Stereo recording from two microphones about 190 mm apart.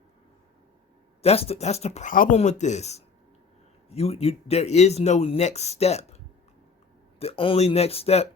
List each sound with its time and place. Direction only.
1.2 s speech: 30° left (ahead or behind)